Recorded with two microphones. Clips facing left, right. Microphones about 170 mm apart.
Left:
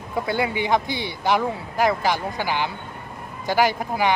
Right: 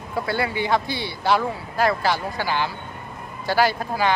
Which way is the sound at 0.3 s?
15° left (ahead or behind).